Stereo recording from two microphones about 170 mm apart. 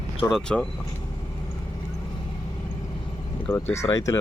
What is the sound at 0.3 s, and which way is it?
Speech, 5° left (ahead or behind).